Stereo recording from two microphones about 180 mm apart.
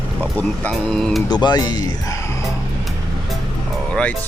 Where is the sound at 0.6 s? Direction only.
Centre (ahead or behind).